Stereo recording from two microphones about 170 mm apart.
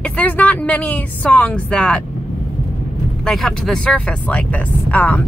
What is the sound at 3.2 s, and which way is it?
Speech, 5° left (ahead or behind).